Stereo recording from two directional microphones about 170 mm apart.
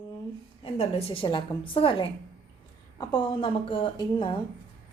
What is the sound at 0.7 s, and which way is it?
A woman's voice, 35° left (ahead or behind).